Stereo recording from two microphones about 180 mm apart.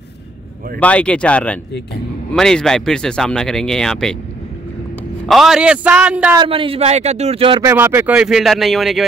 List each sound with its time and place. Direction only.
0.7 s speech: 5° left (ahead or behind)
5.3 s a man's voice: 5° right (ahead or behind)
6.3 s speech: 30° right (ahead or behind)
7.6 s speech: 10° right (ahead or behind)